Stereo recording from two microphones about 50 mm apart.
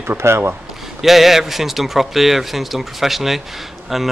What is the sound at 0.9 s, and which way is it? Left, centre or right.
Speech, centre.